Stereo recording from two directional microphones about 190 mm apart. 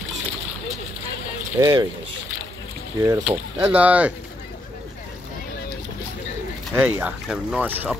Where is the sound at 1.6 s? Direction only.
20° right (ahead or behind).